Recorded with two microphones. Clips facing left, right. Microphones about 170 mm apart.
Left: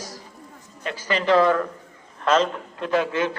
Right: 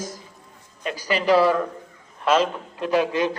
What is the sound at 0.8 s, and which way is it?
A man's voice, 15° right (ahead or behind).